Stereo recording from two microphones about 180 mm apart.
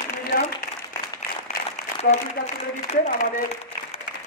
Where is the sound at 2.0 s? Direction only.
40° left (ahead or behind).